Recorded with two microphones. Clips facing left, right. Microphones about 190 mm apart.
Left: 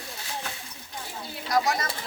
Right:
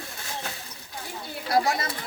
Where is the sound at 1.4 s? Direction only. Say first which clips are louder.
Right 1 dB; 30° right (ahead or behind).